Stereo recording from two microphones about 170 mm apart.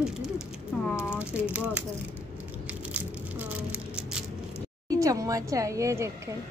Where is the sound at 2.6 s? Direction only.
10° right (ahead or behind).